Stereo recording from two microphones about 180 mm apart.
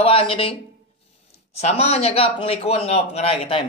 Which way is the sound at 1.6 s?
35° left (ahead or behind).